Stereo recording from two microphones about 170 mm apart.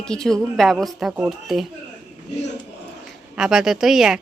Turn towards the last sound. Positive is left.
turn(degrees=-5)  # may be behind; listen again after turning